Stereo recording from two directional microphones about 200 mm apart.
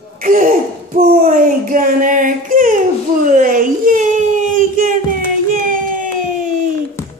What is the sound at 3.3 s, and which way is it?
Whimper, 45° right (ahead or behind).